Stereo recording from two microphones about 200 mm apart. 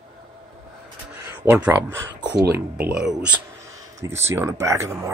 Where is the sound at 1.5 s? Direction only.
10° right (ahead or behind).